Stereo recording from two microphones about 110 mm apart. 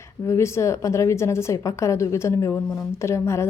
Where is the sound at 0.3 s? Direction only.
25° left (ahead or behind).